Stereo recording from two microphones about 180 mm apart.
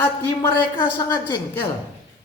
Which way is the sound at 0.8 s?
25° left (ahead or behind).